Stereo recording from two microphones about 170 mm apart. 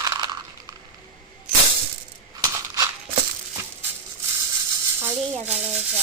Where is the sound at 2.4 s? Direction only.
20° right (ahead or behind).